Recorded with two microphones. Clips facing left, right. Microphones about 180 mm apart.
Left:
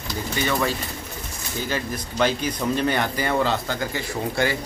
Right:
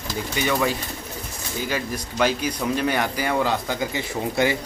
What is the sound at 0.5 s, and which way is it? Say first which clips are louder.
Speech: right 2 dB; 15° right (ahead or behind).